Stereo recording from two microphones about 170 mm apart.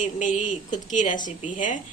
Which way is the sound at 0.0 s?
45° left (ahead or behind).